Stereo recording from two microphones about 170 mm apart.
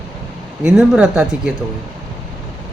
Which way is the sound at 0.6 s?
5° right (ahead or behind).